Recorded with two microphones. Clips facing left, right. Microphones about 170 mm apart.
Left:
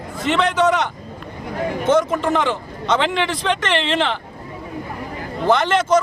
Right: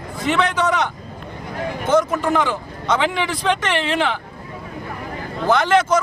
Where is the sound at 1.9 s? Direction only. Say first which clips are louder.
Even; centre (ahead or behind).